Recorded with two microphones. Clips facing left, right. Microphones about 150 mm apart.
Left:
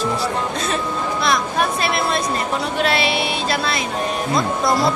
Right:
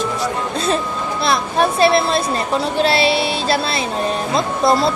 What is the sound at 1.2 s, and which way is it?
Speech, 30° right (ahead or behind).